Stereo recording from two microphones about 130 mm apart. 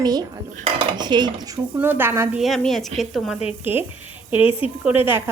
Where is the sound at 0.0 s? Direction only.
30° right (ahead or behind).